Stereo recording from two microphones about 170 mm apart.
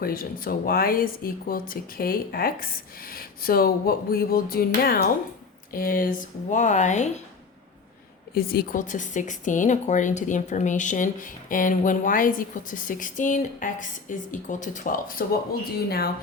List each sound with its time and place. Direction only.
0.0 s speech: 60° left (ahead or behind)
8.4 s speech: 65° left (ahead or behind)